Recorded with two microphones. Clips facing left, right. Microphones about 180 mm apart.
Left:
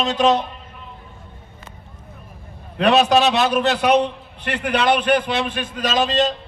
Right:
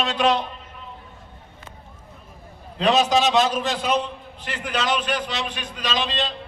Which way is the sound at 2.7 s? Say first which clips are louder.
Left 4 dB; 65° left (ahead or behind).